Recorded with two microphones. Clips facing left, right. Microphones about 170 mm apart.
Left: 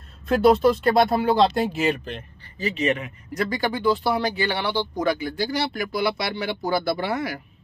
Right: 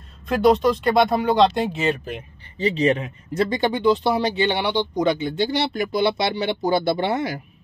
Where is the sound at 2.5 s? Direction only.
30° right (ahead or behind).